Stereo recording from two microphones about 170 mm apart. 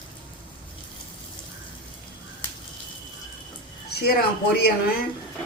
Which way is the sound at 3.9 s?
70° left (ahead or behind).